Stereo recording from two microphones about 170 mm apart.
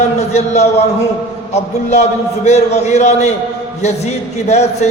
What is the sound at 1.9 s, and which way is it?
A man's voice, 40° left (ahead or behind).